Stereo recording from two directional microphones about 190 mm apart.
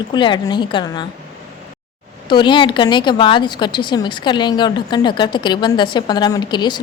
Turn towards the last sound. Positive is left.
turn(degrees=25)  # may be behind; listen again after turning